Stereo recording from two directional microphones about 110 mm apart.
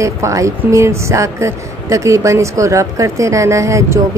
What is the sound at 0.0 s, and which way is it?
Speech, 30° right (ahead or behind).